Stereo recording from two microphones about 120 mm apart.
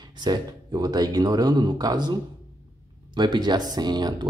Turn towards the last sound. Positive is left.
turn(degrees=-35)  # may be behind; listen again after turning